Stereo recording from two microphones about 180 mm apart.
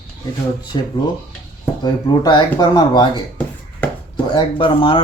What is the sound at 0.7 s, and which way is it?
Speech, 25° left (ahead or behind).